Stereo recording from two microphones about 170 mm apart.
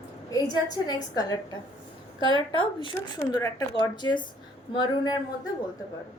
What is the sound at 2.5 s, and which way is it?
A woman's voice, 30° left (ahead or behind).